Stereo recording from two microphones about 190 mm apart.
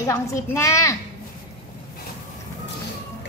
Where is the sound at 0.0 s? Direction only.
15° left (ahead or behind).